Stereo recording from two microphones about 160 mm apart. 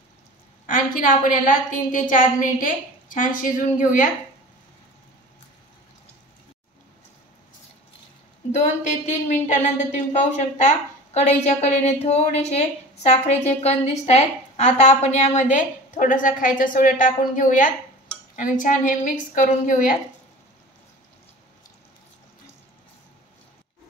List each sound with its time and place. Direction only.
0.7 s a woman's voice: 60° left (ahead or behind)
8.5 s a woman's voice: 50° left (ahead or behind)
11.1 s a woman's voice: 45° left (ahead or behind)